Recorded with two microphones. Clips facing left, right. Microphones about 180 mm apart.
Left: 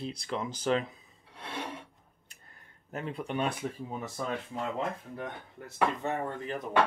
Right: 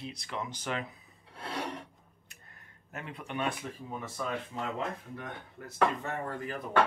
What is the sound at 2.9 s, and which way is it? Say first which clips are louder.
Speech: left 5 dB; 30° left (ahead or behind).